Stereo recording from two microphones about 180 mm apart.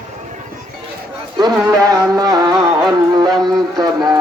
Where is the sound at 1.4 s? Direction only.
20° right (ahead or behind).